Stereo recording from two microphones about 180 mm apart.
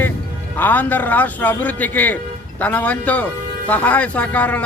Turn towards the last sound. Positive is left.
turn(degrees=10)  # may be behind; listen again after turning